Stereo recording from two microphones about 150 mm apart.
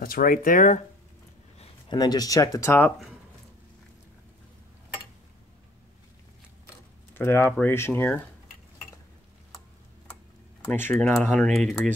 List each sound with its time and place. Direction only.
0.0 s speech: 70° left (ahead or behind)
1.9 s speech: 25° left (ahead or behind)
7.2 s speech: 15° left (ahead or behind)
10.7 s speech: 10° left (ahead or behind)